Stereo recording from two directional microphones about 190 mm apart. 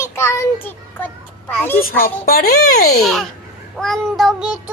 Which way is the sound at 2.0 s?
50° left (ahead or behind).